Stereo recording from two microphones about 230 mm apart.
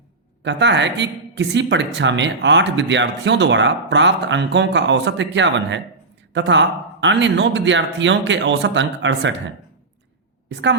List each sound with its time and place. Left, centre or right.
0.4 s a woman's voice: right
10.5 s a woman's voice: right